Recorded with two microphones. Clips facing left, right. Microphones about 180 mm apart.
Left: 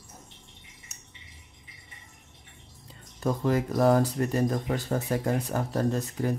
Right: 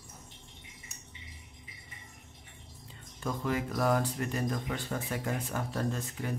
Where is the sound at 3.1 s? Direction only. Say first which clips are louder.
Left 7 dB; 40° left (ahead or behind).